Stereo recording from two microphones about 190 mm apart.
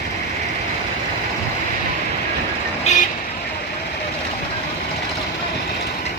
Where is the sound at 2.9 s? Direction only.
35° left (ahead or behind).